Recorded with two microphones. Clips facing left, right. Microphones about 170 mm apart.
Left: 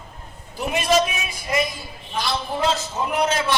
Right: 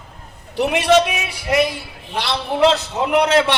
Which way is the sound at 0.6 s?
75° right (ahead or behind).